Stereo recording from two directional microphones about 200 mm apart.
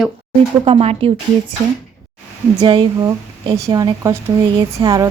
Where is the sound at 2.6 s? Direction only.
20° right (ahead or behind).